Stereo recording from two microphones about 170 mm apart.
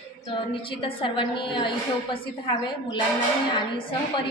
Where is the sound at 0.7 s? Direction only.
30° left (ahead or behind).